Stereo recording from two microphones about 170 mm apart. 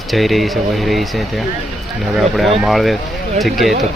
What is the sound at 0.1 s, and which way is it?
Speech, centre (ahead or behind).